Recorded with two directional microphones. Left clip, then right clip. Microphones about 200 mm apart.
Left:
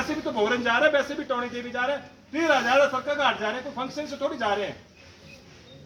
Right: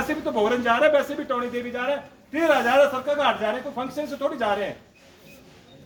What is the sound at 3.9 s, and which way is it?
Speech, 25° right (ahead or behind).